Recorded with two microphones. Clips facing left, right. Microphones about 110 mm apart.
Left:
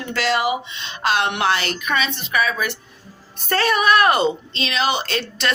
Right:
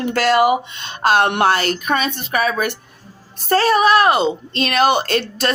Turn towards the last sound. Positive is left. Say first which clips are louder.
# right 6 dB
turn(degrees=-50)  # may be behind; listen again after turning